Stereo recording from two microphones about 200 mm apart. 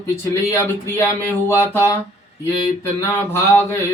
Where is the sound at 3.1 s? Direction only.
10° left (ahead or behind).